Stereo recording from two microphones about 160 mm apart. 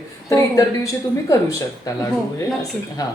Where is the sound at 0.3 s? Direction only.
20° left (ahead or behind).